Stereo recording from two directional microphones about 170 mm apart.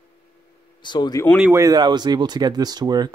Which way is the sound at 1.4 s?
15° right (ahead or behind).